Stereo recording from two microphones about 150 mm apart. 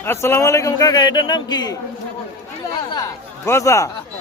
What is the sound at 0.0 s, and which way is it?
A man's voice, 15° left (ahead or behind).